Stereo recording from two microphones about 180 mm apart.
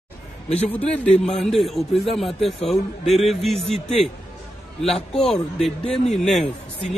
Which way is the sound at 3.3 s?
Centre (ahead or behind).